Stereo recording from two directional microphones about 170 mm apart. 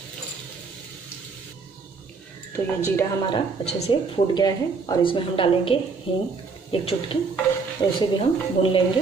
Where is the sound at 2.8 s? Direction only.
20° left (ahead or behind).